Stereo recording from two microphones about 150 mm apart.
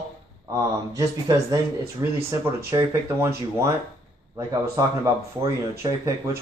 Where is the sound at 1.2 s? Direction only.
25° right (ahead or behind).